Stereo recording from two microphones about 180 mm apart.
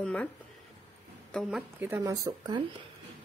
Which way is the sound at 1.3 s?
Centre (ahead or behind).